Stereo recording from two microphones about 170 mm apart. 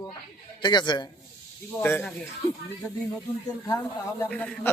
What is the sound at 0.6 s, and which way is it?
Speech, 25° left (ahead or behind).